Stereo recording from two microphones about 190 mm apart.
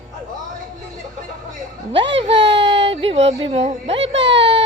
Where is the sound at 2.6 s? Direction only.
25° right (ahead or behind).